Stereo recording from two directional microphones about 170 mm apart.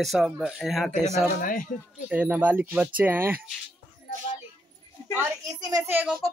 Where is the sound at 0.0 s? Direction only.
Centre (ahead or behind).